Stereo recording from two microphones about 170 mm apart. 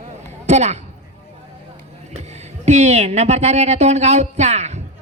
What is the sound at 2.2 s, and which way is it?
A woman's voice, 40° right (ahead or behind).